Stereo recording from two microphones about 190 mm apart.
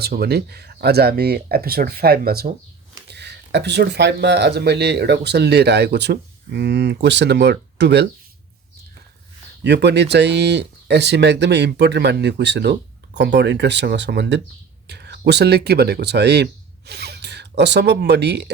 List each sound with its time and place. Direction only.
0.0 s speech: 55° right (ahead or behind)
9.6 s speech: 65° right (ahead or behind)